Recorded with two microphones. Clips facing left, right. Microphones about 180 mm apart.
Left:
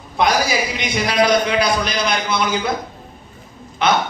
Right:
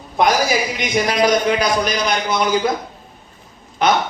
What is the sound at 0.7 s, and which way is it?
A man's voice, 45° right (ahead or behind).